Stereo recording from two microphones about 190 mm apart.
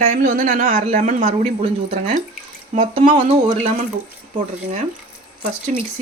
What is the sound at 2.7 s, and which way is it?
Speech, 40° right (ahead or behind).